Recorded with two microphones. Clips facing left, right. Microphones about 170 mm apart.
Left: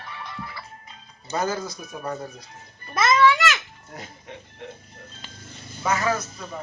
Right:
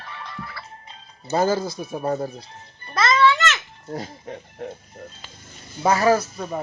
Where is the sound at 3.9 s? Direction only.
35° right (ahead or behind).